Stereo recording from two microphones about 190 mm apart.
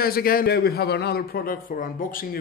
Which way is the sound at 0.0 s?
50° left (ahead or behind).